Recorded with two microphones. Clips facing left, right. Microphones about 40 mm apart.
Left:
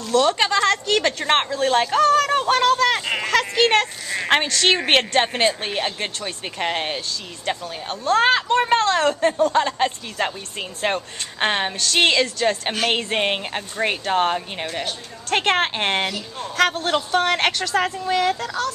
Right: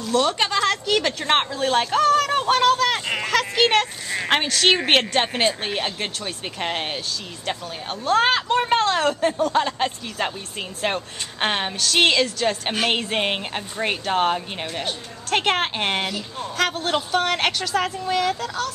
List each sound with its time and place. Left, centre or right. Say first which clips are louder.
0.0 s speech: left 2 dB; centre